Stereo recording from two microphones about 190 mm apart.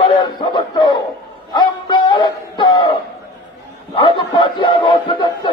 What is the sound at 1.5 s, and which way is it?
Music, 20° left (ahead or behind).